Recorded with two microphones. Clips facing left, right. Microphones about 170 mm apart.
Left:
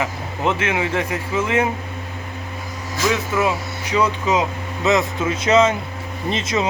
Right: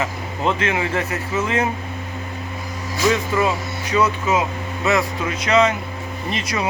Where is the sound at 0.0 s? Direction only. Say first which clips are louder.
Even; 15° left (ahead or behind).